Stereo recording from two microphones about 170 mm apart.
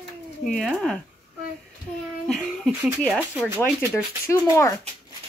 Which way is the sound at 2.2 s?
5° left (ahead or behind).